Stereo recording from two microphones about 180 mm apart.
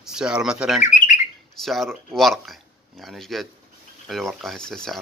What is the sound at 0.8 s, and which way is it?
Bird, 45° left (ahead or behind).